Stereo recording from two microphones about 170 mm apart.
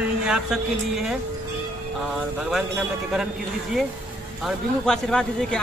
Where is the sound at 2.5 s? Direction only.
5° right (ahead or behind).